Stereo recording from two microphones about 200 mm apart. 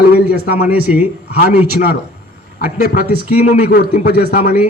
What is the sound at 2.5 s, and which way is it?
Speech, 45° left (ahead or behind).